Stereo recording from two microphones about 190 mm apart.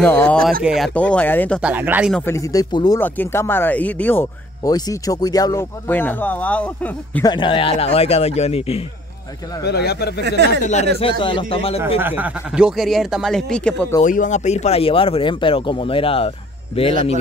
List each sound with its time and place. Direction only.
0.0 s speech: 10° left (ahead or behind)
1.6 s speech: 10° right (ahead or behind)
2.1 s speech: 15° left (ahead or behind)
7.2 s speech: 25° left (ahead or behind)
9.7 s speech: 60° left (ahead or behind)
10.2 s speech: 65° right (ahead or behind)
11.0 s speech: 25° left (ahead or behind)
12.0 s speech: 10° right (ahead or behind); by 13.9 s 5° left (ahead or behind)
14.0 s speech: 45° left (ahead or behind)